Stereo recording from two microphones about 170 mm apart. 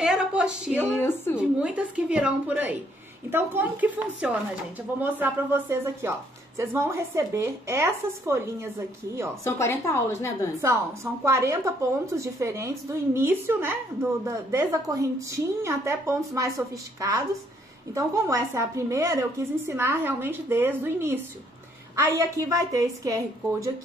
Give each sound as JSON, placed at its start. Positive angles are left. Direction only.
{"t": 0.0, "sound": "speech", "side_deg": -5}
{"t": 0.9, "sound": "a woman's voice", "side_deg": 15}
{"t": 1.6, "sound": "a woman's voice", "side_deg": -5}
{"t": 9.4, "sound": "a woman's voice", "side_deg": 15}
{"t": 10.6, "sound": "a woman's voice", "side_deg": -15}